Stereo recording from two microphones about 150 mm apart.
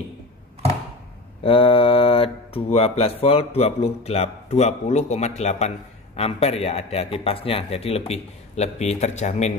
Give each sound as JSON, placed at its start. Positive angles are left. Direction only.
{"t": 1.4, "sound": "a man's voice", "side_deg": 40}